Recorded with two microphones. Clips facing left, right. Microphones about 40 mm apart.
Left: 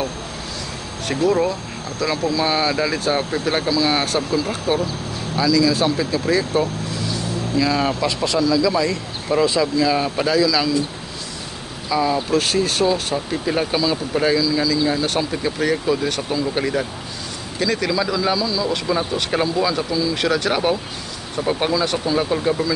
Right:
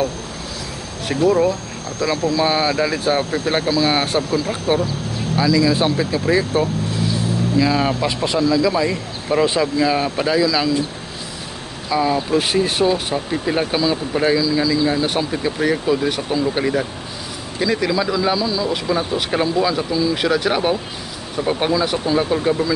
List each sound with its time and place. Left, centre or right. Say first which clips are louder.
1.0 s speech: right 2 dB; centre
2.0 s speech: right 2 dB; centre
11.9 s speech: right 1 dB; centre